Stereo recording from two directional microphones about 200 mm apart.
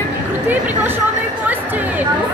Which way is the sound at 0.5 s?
10° right (ahead or behind).